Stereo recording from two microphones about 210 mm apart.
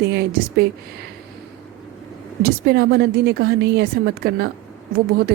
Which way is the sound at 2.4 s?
50° right (ahead or behind).